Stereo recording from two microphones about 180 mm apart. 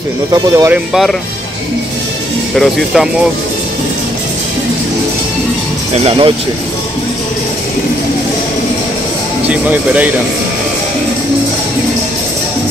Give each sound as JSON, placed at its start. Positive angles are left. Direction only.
{"t": 0.3, "sound": "speech", "side_deg": -20}
{"t": 2.5, "sound": "speech", "side_deg": 0}
{"t": 6.0, "sound": "speech", "side_deg": -30}
{"t": 9.5, "sound": "speech", "side_deg": -10}